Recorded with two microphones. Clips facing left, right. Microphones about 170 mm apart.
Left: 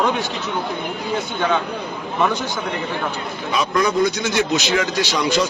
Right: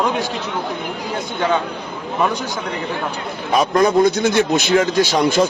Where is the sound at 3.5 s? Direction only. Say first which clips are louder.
Right 5 dB; 50° right (ahead or behind).